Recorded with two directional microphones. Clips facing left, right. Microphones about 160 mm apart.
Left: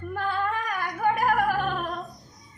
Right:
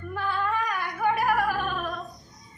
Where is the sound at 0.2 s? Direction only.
50° left (ahead or behind).